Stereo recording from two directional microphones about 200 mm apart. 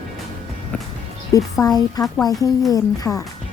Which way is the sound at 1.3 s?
20° left (ahead or behind).